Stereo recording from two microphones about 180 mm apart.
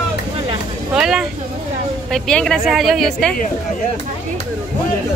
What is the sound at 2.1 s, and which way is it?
A woman's voice, 5° left (ahead or behind).